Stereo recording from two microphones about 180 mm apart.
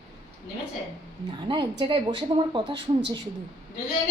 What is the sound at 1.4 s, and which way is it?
A woman's voice, 25° right (ahead or behind).